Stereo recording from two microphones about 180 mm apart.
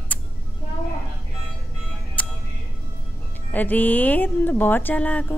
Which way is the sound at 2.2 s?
5° left (ahead or behind).